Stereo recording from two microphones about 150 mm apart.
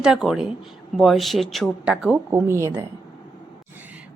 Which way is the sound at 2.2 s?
15° right (ahead or behind).